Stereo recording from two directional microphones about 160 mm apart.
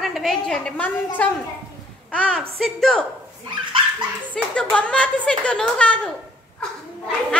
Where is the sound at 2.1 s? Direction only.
5° left (ahead or behind).